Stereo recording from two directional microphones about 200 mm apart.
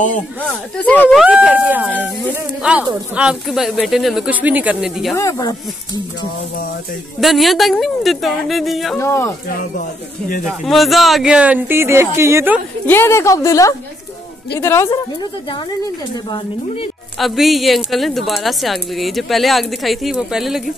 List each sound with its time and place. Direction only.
0.1 s speech: 5° left (ahead or behind)
1.2 s a woman's voice: 5° right (ahead or behind)
5.1 s speech: 15° left (ahead or behind)
7.2 s a woman's voice: centre (ahead or behind)
8.9 s speech: 15° left (ahead or behind)
10.4 s speech: centre (ahead or behind)
12.8 s speech: 10° left (ahead or behind)
16.3 s a woman's voice: 25° left (ahead or behind)
17.2 s a woman's voice: centre (ahead or behind)